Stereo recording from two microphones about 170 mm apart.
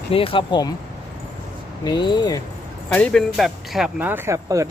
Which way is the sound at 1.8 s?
25° left (ahead or behind).